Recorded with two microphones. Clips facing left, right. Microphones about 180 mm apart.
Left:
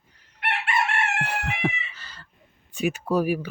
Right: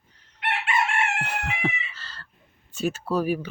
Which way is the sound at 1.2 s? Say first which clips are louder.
Left 1 dB; 10° left (ahead or behind).